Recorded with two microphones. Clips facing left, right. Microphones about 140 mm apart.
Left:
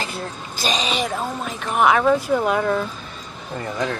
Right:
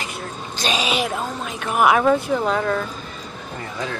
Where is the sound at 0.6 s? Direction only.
5° right (ahead or behind); by 2.8 s 15° left (ahead or behind).